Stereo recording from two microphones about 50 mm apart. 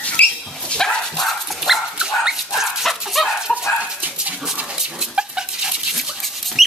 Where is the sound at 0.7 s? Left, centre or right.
Centre.